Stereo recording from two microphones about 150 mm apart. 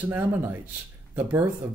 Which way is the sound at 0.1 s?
15° right (ahead or behind).